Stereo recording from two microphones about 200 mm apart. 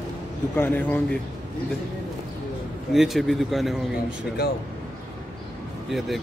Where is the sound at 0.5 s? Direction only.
10° left (ahead or behind).